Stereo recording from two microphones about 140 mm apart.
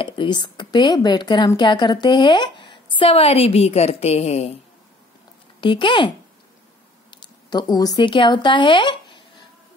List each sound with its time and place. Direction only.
0.0 s a woman's voice: 35° left (ahead or behind)
5.6 s a woman's voice: 35° left (ahead or behind)